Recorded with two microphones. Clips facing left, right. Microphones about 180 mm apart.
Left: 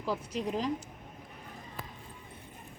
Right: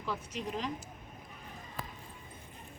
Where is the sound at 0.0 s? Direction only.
35° left (ahead or behind).